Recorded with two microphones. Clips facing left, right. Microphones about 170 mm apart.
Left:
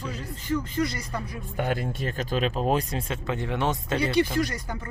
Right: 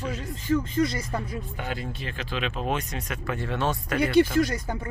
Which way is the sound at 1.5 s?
50° left (ahead or behind).